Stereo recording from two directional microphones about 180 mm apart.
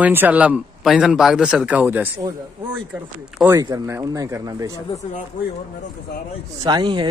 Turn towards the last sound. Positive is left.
turn(degrees=-25)  # may be behind; listen again after turning